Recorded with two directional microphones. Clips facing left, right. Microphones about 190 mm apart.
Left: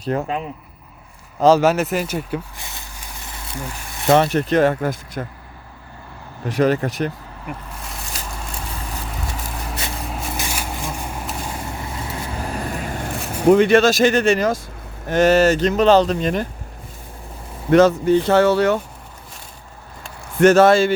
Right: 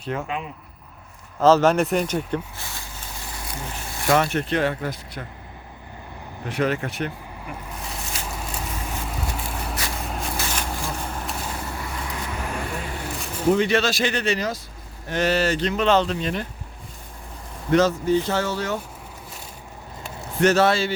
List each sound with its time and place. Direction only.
0.0 s speech: 40° left (ahead or behind)
1.4 s speech: 10° left (ahead or behind)
2.6 s vehicle: 20° left (ahead or behind)
3.9 s speech: 25° left (ahead or behind); by 5.2 s 45° left (ahead or behind)
6.5 s speech: 40° left (ahead or behind)
10.1 s vehicle: 5° left (ahead or behind)
12.4 s vehicle: 40° left (ahead or behind)
13.4 s speech: 60° left (ahead or behind)
17.7 s speech: 55° left (ahead or behind)
20.4 s speech: 50° left (ahead or behind)